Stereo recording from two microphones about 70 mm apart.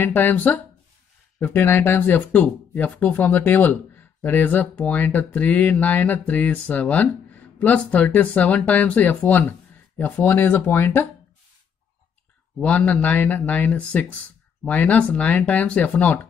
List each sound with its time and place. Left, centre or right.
0.0 s speech: left
12.6 s speech: centre